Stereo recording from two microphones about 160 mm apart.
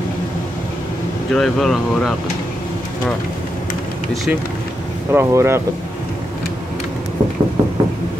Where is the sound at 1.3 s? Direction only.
Centre (ahead or behind).